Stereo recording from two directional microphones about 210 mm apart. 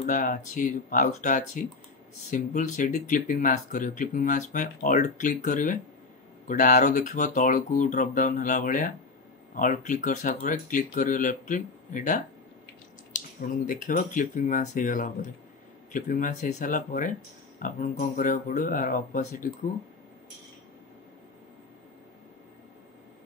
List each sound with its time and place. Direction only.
0.0 s speech: 40° left (ahead or behind)